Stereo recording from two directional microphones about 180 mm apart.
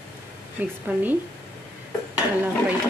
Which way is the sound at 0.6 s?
10° right (ahead or behind).